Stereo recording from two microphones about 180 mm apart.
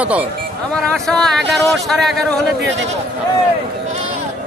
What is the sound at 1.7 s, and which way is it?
Speech, centre (ahead or behind).